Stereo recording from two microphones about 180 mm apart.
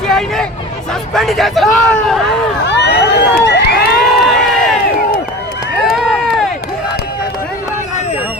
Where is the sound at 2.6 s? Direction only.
70° left (ahead or behind).